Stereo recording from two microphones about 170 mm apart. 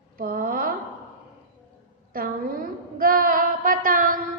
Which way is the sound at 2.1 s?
55° right (ahead or behind).